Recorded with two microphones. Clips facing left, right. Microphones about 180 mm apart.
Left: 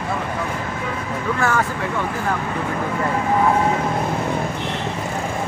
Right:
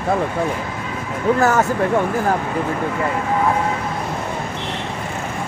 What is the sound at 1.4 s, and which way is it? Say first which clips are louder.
Speech: right 4 dB; 40° right (ahead or behind).